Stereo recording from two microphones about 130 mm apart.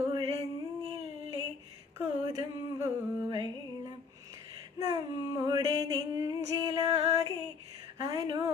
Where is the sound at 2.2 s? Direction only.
30° right (ahead or behind).